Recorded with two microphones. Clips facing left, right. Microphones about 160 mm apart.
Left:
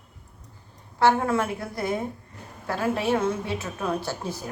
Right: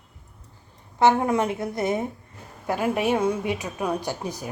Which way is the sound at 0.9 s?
20° right (ahead or behind).